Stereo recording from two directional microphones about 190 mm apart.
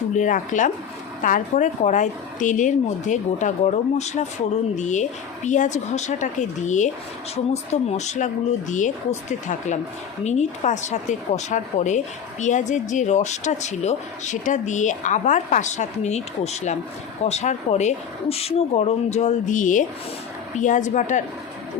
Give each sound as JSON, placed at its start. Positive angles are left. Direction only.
{"t": 0.2, "sound": "a woman's voice", "side_deg": 45}
{"t": 10.2, "sound": "a woman's voice", "side_deg": 35}